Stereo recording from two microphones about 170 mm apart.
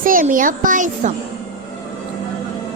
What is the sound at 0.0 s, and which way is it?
Speech, 55° right (ahead or behind).